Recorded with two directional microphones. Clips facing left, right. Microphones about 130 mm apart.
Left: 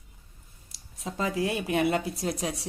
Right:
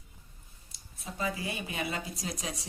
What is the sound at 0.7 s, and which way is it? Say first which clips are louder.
Speech: left 7 dB; 90° left.